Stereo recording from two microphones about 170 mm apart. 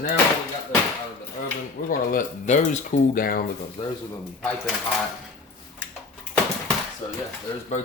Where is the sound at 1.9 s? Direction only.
55° left (ahead or behind).